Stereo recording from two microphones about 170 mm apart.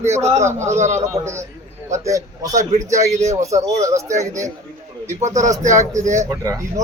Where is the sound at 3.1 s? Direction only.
40° right (ahead or behind).